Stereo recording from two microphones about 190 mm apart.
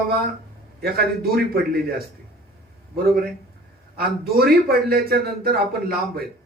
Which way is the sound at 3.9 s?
55° right (ahead or behind).